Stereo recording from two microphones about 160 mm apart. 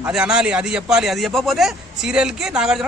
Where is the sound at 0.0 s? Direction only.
5° right (ahead or behind).